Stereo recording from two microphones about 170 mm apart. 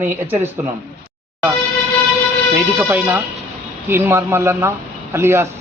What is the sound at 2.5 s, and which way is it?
Speech, 15° right (ahead or behind).